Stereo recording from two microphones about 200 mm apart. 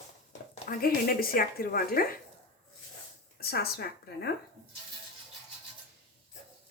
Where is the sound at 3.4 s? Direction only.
50° left (ahead or behind).